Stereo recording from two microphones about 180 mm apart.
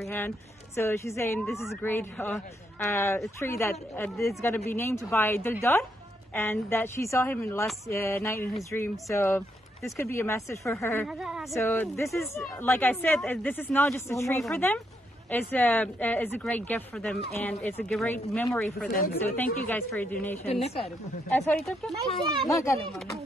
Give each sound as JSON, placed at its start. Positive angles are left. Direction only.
{"t": 0.7, "sound": "speech", "side_deg": 15}
{"t": 11.1, "sound": "speech", "side_deg": -5}
{"t": 11.5, "sound": "speech", "side_deg": 15}
{"t": 18.9, "sound": "a woman's voice", "side_deg": 55}
{"t": 19.2, "sound": "speech", "side_deg": 10}
{"t": 20.6, "sound": "speech", "side_deg": 30}
{"t": 21.4, "sound": "speech", "side_deg": 0}
{"t": 22.5, "sound": "speech", "side_deg": 15}